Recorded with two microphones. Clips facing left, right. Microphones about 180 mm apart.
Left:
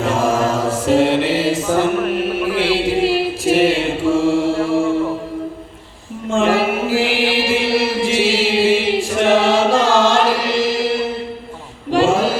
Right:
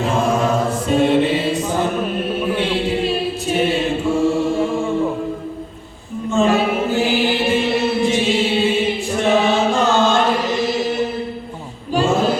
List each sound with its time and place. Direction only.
0.0 s mantra: 90° left
6.3 s music: 90° left
7.3 s chant: 90° left
11.9 s a sound: 90° left